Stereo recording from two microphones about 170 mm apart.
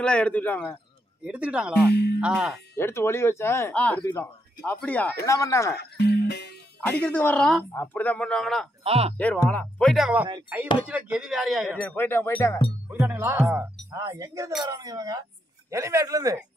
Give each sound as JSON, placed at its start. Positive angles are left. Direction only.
{"t": 0.0, "sound": "speech", "side_deg": 5}
{"t": 1.2, "sound": "speech", "side_deg": -5}
{"t": 2.7, "sound": "speech", "side_deg": 15}
{"t": 5.8, "sound": "music", "side_deg": 75}
{"t": 6.9, "sound": "speech", "side_deg": 10}
{"t": 8.8, "sound": "speech", "side_deg": -35}
{"t": 9.1, "sound": "speech", "side_deg": 10}
{"t": 12.5, "sound": "speech", "side_deg": 25}
{"t": 13.0, "sound": "a man's voice", "side_deg": -15}